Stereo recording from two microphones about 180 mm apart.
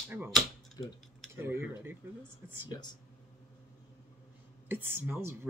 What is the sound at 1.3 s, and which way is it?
Speech, 15° right (ahead or behind).